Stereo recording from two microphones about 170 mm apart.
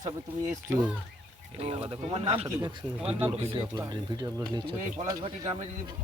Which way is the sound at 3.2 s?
35° right (ahead or behind).